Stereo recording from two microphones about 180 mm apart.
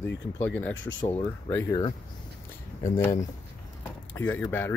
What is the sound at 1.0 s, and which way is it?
Speech, 15° left (ahead or behind).